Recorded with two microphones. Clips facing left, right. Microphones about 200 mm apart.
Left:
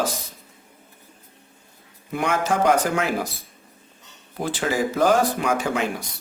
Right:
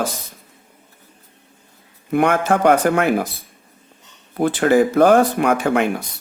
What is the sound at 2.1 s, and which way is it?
Speech, 60° right (ahead or behind).